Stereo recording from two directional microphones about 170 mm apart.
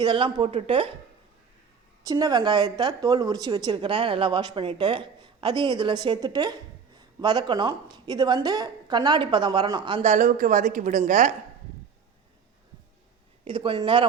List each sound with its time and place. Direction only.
0.0 s a woman's voice: 30° right (ahead or behind)
2.0 s a woman's voice: 25° right (ahead or behind)
10.0 s a woman's voice: 45° right (ahead or behind)
13.4 s a woman's voice: 30° right (ahead or behind)